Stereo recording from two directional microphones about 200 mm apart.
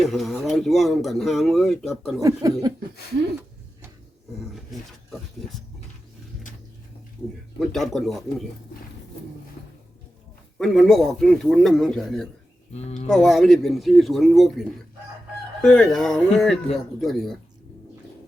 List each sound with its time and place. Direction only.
0.0 s speech: centre (ahead or behind)
2.2 s speech: 20° right (ahead or behind)
4.5 s speech: centre (ahead or behind)
7.6 s speech: centre (ahead or behind)
10.6 s speech: centre (ahead or behind)